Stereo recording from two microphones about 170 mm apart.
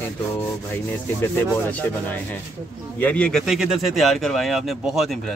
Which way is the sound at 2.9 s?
10° left (ahead or behind).